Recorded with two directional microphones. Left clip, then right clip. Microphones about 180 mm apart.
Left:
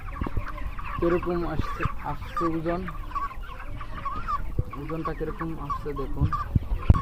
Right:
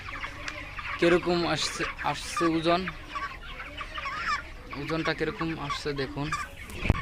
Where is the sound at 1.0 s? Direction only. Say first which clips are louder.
Right 2 dB; 35° right (ahead or behind).